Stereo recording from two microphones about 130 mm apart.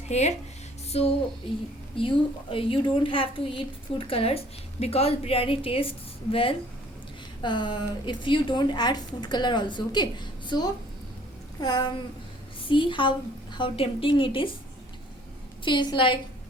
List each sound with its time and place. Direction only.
0.1 s a woman's voice: 60° left (ahead or behind); by 14.5 s 40° left (ahead or behind)
15.6 s a woman's voice: 35° left (ahead or behind)